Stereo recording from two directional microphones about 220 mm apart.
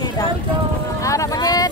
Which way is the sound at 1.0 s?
15° left (ahead or behind).